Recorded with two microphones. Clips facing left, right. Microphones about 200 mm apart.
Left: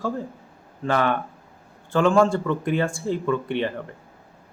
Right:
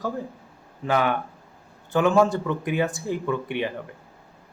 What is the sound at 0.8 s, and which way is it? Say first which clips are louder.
Speech: left 1 dB; 10° right (ahead or behind).